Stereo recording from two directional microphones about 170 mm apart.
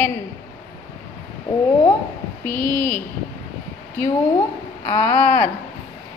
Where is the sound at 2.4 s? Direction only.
10° left (ahead or behind).